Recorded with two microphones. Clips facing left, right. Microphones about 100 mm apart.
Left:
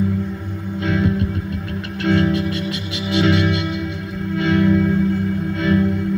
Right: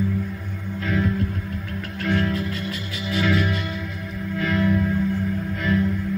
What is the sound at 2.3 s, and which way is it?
Music, 90° left.